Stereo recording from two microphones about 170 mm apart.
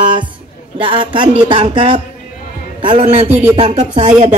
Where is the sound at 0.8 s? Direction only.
30° right (ahead or behind).